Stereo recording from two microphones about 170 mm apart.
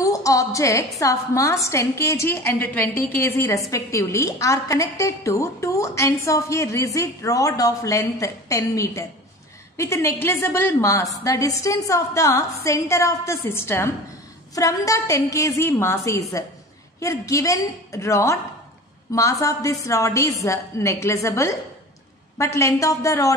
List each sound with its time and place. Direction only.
0.0 s a woman's voice: 20° left (ahead or behind)